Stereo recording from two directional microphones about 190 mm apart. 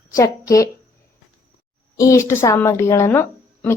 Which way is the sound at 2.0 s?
15° left (ahead or behind).